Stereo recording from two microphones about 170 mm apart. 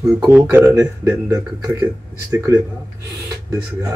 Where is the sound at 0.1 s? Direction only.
5° right (ahead or behind).